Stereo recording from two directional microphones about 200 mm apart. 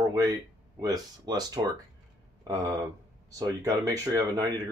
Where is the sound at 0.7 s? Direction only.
20° right (ahead or behind).